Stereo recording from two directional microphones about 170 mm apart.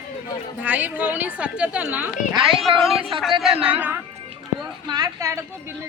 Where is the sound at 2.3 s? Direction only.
30° right (ahead or behind).